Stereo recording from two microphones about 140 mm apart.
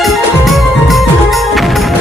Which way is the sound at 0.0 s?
Centre (ahead or behind).